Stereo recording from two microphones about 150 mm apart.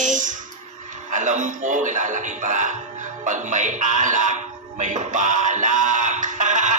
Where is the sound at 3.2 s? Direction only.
55° right (ahead or behind).